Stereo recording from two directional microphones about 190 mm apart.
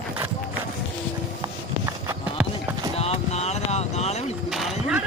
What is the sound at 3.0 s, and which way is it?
Boat, 35° left (ahead or behind).